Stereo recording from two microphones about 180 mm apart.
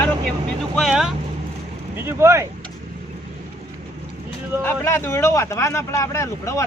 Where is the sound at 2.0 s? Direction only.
15° right (ahead or behind).